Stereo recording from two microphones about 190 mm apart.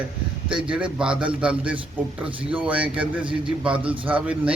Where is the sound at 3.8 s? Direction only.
25° right (ahead or behind).